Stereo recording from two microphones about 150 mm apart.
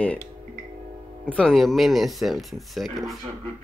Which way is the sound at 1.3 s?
5° left (ahead or behind).